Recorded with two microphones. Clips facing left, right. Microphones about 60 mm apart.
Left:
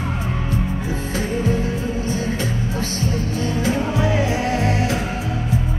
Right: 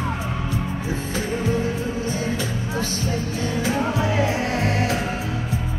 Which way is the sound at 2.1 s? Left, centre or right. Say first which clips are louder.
Left 2 dB; left.